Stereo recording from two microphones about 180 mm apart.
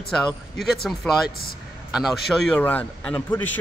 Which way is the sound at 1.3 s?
60° left (ahead or behind).